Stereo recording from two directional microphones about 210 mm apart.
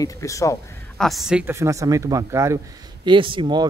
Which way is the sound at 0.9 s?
Centre (ahead or behind).